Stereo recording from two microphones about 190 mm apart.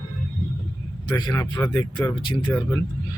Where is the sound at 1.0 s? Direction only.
20° left (ahead or behind).